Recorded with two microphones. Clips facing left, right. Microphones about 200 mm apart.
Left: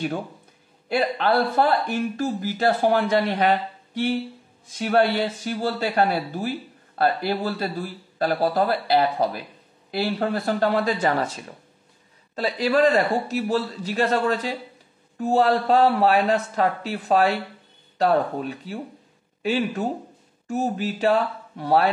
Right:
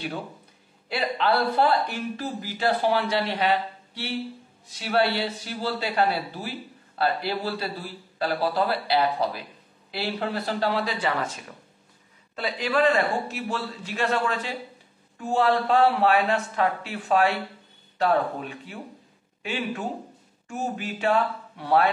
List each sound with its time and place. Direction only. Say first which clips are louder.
0.8 s a man's voice: left 3 dB; 45° left (ahead or behind)